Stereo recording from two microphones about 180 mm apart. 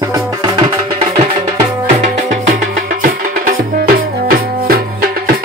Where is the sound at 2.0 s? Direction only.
45° right (ahead or behind).